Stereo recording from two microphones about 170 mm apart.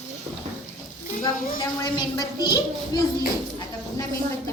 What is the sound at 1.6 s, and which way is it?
A woman's voice, 25° left (ahead or behind).